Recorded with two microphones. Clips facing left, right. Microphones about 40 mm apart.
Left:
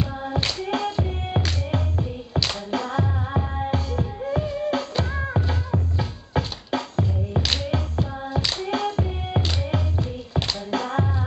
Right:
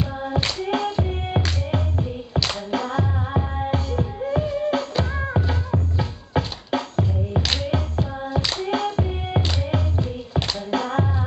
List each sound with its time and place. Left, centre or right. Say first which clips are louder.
0.0 s music: right 1 dB; centre